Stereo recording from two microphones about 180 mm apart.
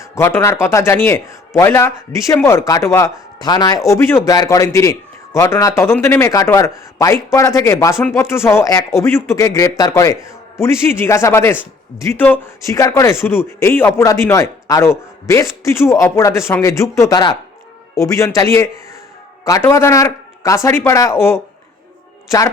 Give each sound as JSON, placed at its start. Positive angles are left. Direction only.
{"t": 0.0, "sound": "a man's voice", "side_deg": 15}
{"t": 19.5, "sound": "a man's voice", "side_deg": 15}